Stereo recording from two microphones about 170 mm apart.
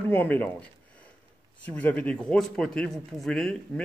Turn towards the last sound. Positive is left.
turn(degrees=0)  # may be behind; listen again after turning